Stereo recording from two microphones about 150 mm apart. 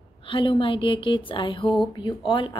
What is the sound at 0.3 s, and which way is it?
A woman's voice, 35° left (ahead or behind).